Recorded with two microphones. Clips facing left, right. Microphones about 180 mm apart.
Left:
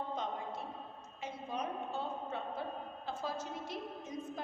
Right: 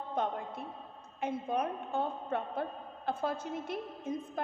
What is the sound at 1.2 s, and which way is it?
A woman's voice, 55° right (ahead or behind).